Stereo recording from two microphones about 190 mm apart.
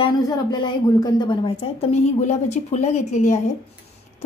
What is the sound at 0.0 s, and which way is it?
A woman's voice, 20° left (ahead or behind).